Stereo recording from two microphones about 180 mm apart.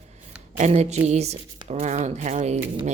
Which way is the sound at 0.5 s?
40° right (ahead or behind).